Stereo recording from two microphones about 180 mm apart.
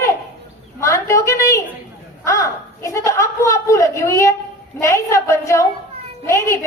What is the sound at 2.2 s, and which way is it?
A man's voice, 15° left (ahead or behind).